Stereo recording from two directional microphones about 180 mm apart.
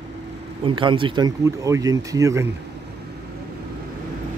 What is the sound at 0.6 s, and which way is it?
Speech, 30° right (ahead or behind).